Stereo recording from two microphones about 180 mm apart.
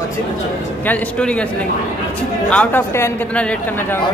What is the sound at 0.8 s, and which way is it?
Speech, 10° left (ahead or behind).